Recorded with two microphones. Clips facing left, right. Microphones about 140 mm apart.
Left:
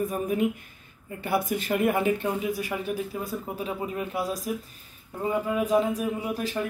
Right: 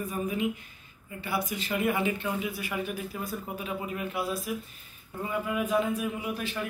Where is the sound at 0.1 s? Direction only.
55° left (ahead or behind).